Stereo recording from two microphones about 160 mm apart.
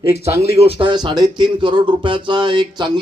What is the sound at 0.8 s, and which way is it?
Speech, 30° right (ahead or behind).